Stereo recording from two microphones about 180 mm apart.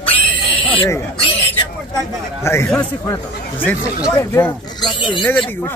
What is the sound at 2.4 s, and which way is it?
Speech, 15° left (ahead or behind).